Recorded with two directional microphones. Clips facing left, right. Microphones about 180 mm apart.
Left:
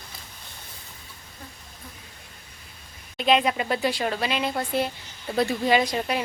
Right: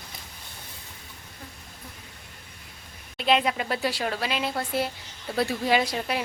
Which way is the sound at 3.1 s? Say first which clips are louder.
Left 2 dB; centre (ahead or behind).